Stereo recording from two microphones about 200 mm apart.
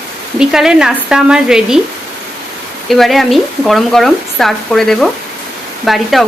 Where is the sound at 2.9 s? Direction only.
Centre (ahead or behind).